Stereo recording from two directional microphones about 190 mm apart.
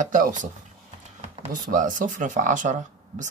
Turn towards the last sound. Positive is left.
turn(degrees=-40)  # may be behind; listen again after turning